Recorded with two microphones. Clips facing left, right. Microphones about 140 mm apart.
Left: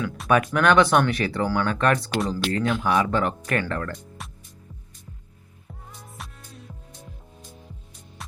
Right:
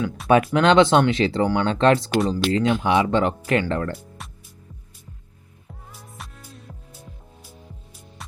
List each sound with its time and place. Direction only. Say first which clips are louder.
0.3 s speech: right 3 dB; 25° right (ahead or behind)
4.2 s music: even; centre (ahead or behind)
5.9 s music: even; 5° right (ahead or behind)